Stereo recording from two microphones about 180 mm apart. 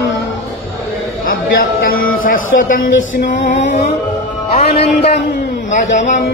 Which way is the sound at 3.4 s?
75° left (ahead or behind).